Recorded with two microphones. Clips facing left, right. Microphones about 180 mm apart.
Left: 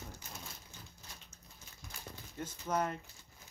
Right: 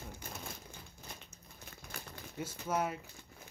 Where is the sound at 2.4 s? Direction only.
10° right (ahead or behind).